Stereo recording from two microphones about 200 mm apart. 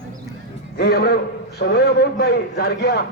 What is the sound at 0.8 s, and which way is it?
A man's voice, 50° left (ahead or behind).